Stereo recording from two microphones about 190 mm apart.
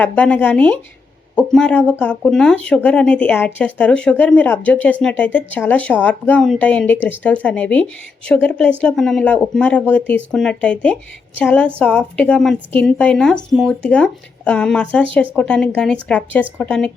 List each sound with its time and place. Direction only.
0.0 s a woman's voice: 10° left (ahead or behind)